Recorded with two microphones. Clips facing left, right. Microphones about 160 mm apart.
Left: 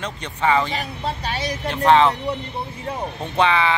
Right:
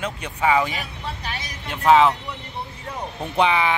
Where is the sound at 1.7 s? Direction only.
5° right (ahead or behind).